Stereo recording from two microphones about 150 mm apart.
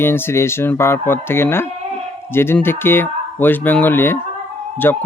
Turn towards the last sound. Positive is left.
turn(degrees=15)  # may be behind; listen again after turning